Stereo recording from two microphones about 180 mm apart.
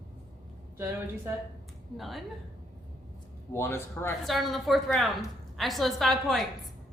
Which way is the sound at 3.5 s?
15° left (ahead or behind).